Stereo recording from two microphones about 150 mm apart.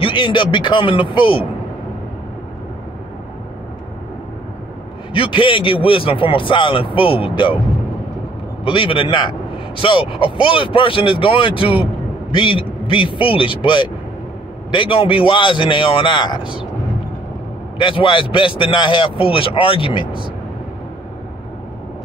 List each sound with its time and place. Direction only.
0.0 s speech: 30° left (ahead or behind)
5.1 s speech: 35° left (ahead or behind)
8.6 s speech: 35° left (ahead or behind)
17.7 s speech: 35° left (ahead or behind)